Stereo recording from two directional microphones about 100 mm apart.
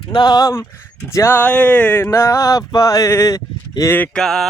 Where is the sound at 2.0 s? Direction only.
30° left (ahead or behind).